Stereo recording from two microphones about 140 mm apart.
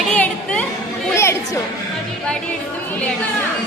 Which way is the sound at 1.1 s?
20° left (ahead or behind).